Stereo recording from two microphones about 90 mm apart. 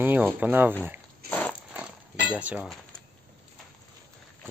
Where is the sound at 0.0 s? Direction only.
20° right (ahead or behind).